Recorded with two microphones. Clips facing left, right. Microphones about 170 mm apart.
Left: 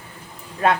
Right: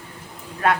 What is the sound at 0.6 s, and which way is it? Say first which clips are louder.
Speech: left 2 dB; 25° left (ahead or behind).